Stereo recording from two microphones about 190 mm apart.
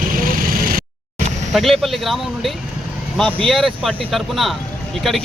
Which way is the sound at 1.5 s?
Centre (ahead or behind).